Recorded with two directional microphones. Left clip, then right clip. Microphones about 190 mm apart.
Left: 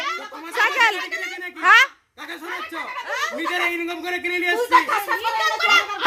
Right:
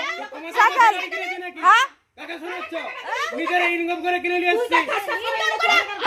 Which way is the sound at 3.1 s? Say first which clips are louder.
Right 2 dB; 25° left (ahead or behind).